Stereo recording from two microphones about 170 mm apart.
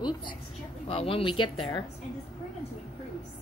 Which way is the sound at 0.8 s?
30° left (ahead or behind).